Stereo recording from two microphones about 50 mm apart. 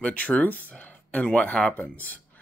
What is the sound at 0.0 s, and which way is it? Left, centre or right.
Speech, left.